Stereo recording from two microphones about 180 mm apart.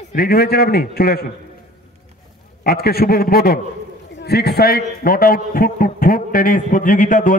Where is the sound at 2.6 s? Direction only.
60° left (ahead or behind).